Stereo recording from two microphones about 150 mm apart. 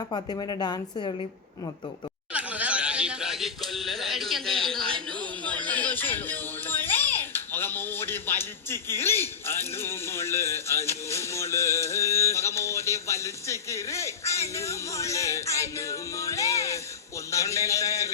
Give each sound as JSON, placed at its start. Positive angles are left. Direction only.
{"t": 0.1, "sound": "a woman's voice", "side_deg": 30}
{"t": 2.3, "sound": "a sound", "side_deg": -10}
{"t": 5.4, "sound": "speech", "side_deg": 10}
{"t": 14.5, "sound": "music", "side_deg": 20}